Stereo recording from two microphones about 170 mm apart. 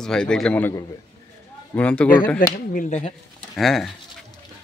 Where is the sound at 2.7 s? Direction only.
45° left (ahead or behind).